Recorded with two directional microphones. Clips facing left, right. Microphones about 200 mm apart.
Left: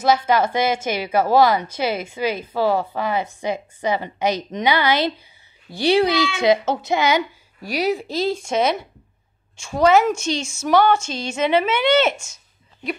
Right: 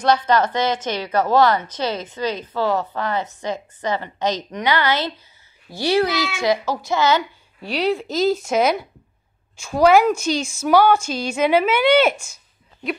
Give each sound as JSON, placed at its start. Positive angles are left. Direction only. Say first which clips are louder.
{"t": 0.0, "sound": "a woman's voice", "louder": "even", "side_deg": 10}
{"t": 8.1, "sound": "speech", "louder": "right 3 dB", "side_deg": 30}
{"t": 8.5, "sound": "speech", "louder": "right 2 dB", "side_deg": -5}
{"t": 10.1, "sound": "speech", "louder": "right 2 dB", "side_deg": 25}
{"t": 10.7, "sound": "speech", "louder": "right 1 dB", "side_deg": -5}